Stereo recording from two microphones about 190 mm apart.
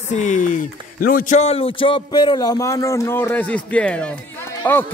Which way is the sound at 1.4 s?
30° left (ahead or behind).